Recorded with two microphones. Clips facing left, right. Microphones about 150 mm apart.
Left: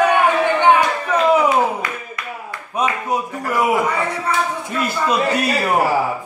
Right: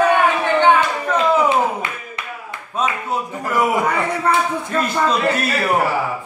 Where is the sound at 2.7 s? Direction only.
15° left (ahead or behind).